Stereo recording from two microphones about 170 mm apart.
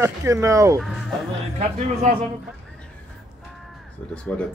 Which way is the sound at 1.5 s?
45° right (ahead or behind).